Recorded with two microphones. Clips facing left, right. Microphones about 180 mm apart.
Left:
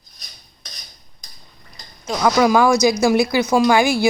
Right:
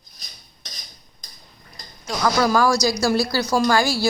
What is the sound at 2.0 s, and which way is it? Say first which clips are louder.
Speech: left 4 dB; 15° left (ahead or behind).